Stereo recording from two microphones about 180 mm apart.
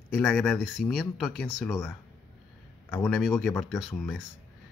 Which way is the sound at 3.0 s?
Centre (ahead or behind).